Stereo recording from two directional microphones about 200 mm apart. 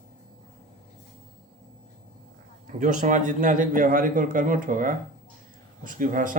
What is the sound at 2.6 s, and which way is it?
A man's voice, 40° right (ahead or behind).